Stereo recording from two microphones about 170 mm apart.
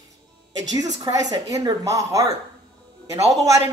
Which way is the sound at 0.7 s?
25° right (ahead or behind).